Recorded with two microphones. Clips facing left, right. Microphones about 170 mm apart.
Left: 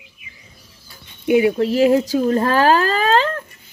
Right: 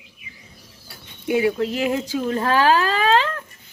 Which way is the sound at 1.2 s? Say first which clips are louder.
Left 5 dB; 20° left (ahead or behind).